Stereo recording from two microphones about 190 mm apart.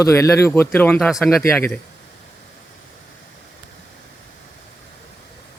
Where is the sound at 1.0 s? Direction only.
Centre (ahead or behind).